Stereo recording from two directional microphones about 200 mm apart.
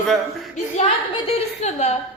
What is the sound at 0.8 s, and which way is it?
A woman's voice, 35° left (ahead or behind).